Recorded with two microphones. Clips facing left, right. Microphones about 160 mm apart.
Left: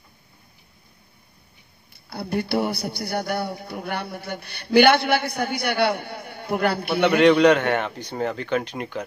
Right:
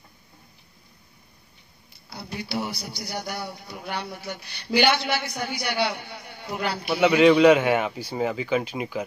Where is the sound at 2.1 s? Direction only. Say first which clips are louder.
Left 7 dB; 60° left (ahead or behind).